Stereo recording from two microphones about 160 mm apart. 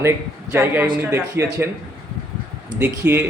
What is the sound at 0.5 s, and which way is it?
A man's voice, 15° right (ahead or behind).